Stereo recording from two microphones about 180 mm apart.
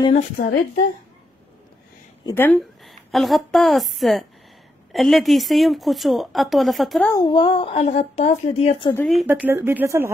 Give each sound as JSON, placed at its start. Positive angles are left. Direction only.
{"t": 0.1, "sound": "a woman's voice", "side_deg": 45}
{"t": 2.2, "sound": "speech", "side_deg": 10}
{"t": 7.1, "sound": "speech", "side_deg": 25}
{"t": 9.2, "sound": "speech", "side_deg": -10}